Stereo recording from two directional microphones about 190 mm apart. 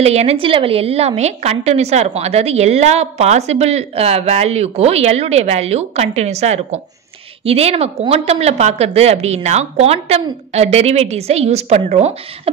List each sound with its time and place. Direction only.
0.0 s a woman's voice: 35° right (ahead or behind)